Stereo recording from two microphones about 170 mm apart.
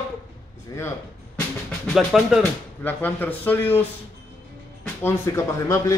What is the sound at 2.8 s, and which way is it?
A man's voice, 10° left (ahead or behind).